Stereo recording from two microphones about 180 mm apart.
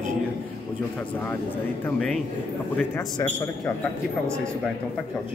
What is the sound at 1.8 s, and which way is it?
Speech, 5° left (ahead or behind).